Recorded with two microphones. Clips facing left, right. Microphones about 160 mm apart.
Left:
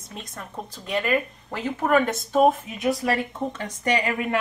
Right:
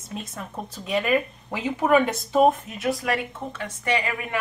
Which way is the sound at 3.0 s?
30° left (ahead or behind).